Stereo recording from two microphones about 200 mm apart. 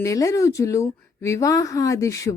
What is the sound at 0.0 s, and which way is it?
Speech, 15° left (ahead or behind).